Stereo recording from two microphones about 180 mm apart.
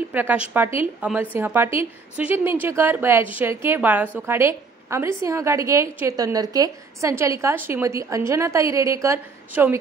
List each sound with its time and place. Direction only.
0.1 s a woman's voice: 10° right (ahead or behind)